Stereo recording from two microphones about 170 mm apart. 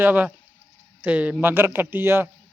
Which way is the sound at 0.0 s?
10° right (ahead or behind).